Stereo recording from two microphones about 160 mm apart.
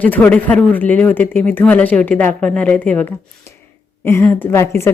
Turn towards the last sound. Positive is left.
turn(degrees=15)  # may be behind; listen again after turning